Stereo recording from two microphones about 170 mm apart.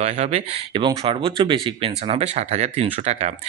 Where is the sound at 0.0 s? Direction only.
35° right (ahead or behind).